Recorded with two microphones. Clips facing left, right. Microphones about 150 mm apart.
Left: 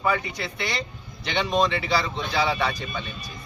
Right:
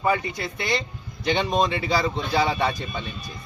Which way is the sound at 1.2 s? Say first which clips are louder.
Right 1 dB; 45° right (ahead or behind).